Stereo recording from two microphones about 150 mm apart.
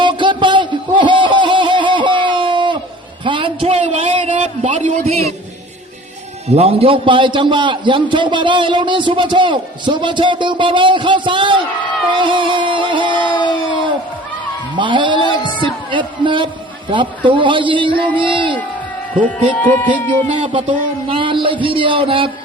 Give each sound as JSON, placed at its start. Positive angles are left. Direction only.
{"t": 0.0, "sound": "a sound", "side_deg": -30}
{"t": 6.5, "sound": "a man's voice", "side_deg": -40}
{"t": 12.1, "sound": "music", "side_deg": -35}
{"t": 13.3, "sound": "crowd", "side_deg": 30}
{"t": 14.8, "sound": "a man's voice", "side_deg": -35}
{"t": 19.6, "sound": "speech", "side_deg": 10}
{"t": 20.2, "sound": "a man's voice", "side_deg": -40}